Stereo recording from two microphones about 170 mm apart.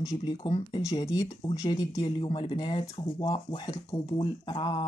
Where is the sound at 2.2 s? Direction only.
30° left (ahead or behind).